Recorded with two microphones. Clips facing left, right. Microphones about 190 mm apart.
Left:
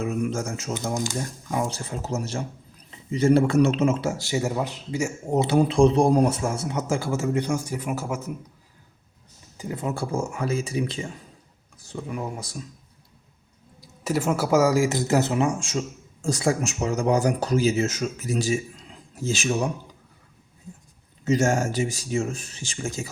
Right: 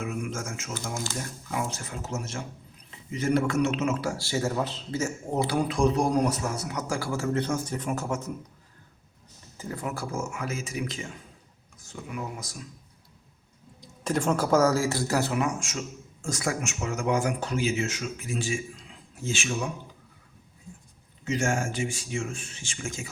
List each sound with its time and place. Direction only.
0.0 s a sound: 35° left (ahead or behind)
1.5 s speech: 35° left (ahead or behind); by 8.3 s 5° left (ahead or behind)
9.6 s speech: 20° left (ahead or behind)
14.0 s speech: 5° left (ahead or behind); by 19.6 s 40° left (ahead or behind)
21.2 s speech: 40° left (ahead or behind)